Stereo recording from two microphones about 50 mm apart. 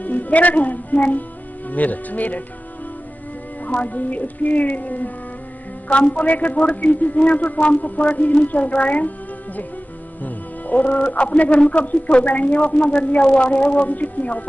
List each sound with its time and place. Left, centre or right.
0.0 s a woman's voice: left
3.6 s speech: left
10.2 s speech: left